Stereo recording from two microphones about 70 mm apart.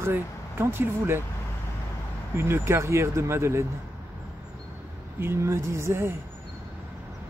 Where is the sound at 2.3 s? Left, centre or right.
Right.